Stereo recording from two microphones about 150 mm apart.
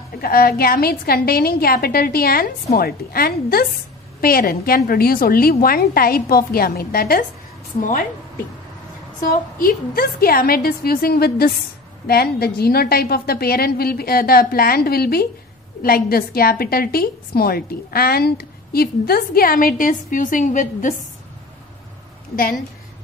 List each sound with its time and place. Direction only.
0.2 s a woman's voice: 85° left
9.2 s a woman's voice: 70° left (ahead or behind)
22.3 s a woman's voice: 70° left (ahead or behind)